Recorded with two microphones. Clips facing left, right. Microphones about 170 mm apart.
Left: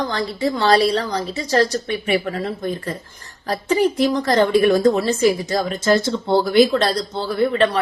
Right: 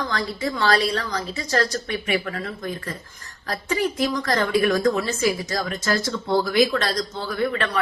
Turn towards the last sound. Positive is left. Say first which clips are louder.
# left 6 dB
turn(degrees=30)  # may be behind; listen again after turning